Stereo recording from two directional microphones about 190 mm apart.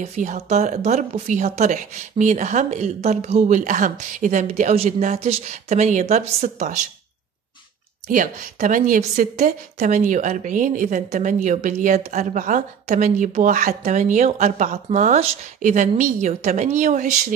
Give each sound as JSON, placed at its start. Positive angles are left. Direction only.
{"t": 0.0, "sound": "a woman's voice", "side_deg": -40}
{"t": 8.1, "sound": "a woman's voice", "side_deg": -45}